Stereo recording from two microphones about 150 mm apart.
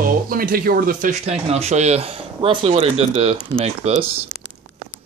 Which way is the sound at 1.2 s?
45° right (ahead or behind).